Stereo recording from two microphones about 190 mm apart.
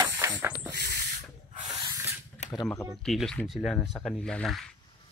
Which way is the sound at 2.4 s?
35° left (ahead or behind).